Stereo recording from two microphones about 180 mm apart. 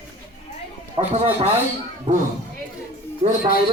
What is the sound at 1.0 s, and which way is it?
Speech, 35° right (ahead or behind).